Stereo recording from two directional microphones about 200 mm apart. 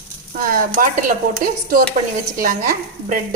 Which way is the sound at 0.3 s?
45° right (ahead or behind).